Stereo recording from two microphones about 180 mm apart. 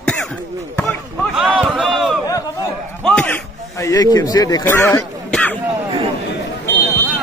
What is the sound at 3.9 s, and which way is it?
A man's voice, 20° left (ahead or behind).